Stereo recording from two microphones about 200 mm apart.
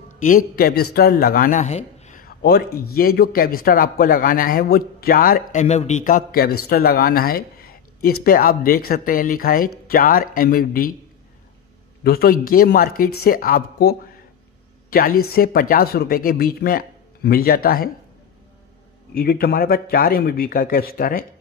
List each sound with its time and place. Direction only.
0.6 s a man's voice: 50° left (ahead or behind)
12.0 s a man's voice: 50° left (ahead or behind)
19.1 s a man's voice: 50° left (ahead or behind)